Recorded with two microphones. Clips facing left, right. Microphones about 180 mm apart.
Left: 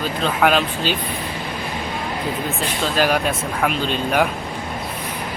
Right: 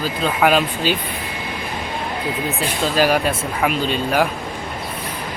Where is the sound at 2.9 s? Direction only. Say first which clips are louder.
Right 2 dB; 5° right (ahead or behind).